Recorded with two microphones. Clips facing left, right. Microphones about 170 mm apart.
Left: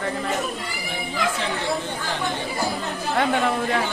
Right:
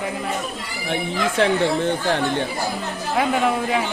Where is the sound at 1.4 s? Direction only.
60° right (ahead or behind).